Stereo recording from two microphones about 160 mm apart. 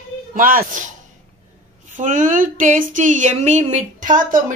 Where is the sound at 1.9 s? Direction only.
55° right (ahead or behind).